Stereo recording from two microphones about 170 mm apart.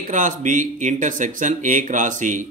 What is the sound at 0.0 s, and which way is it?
Speech, 50° right (ahead or behind).